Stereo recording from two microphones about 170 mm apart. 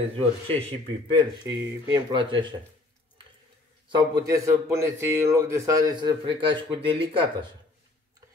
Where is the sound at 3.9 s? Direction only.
25° right (ahead or behind).